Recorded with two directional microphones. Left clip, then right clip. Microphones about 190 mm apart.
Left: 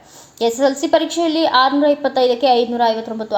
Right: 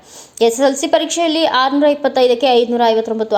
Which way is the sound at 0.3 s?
30° right (ahead or behind).